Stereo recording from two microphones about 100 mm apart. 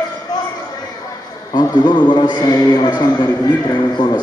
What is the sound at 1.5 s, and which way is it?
A man's voice, 45° left (ahead or behind).